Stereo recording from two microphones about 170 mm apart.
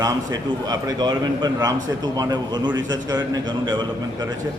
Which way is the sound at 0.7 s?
25° right (ahead or behind).